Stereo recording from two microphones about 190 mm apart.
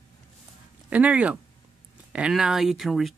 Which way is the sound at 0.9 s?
5° right (ahead or behind).